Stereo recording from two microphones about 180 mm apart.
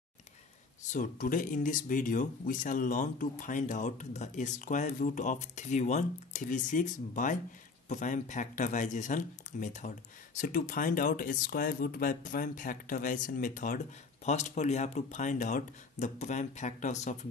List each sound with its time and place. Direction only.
0.9 s speech: 50° left (ahead or behind)